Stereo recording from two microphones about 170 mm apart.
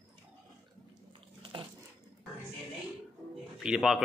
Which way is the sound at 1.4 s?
25° right (ahead or behind).